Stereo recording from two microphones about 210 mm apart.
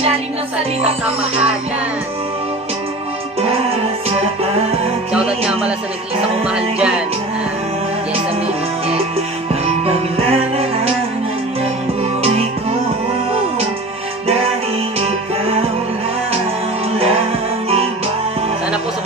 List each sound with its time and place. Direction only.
0.8 s music: 30° right (ahead or behind)
6.4 s music: 5° right (ahead or behind)
9.5 s music: 30° right (ahead or behind)
12.0 s music: 30° right (ahead or behind)
14.2 s music: 30° right (ahead or behind)